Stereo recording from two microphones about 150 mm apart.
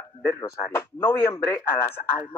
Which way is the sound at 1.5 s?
15° left (ahead or behind).